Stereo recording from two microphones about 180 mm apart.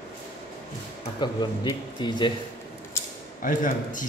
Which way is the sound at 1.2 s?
25° left (ahead or behind).